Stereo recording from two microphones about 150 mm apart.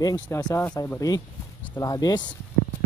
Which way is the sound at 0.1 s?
20° left (ahead or behind).